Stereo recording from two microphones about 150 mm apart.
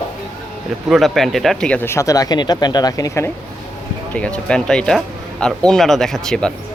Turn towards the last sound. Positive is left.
turn(degrees=5)  # may be behind; listen again after turning